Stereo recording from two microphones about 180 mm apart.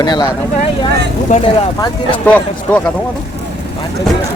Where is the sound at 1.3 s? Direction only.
45° left (ahead or behind).